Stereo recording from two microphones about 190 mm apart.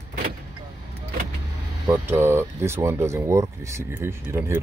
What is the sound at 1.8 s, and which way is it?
Speech, 15° right (ahead or behind).